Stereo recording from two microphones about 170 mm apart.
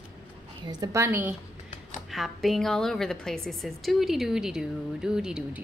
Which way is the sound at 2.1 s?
Centre (ahead or behind).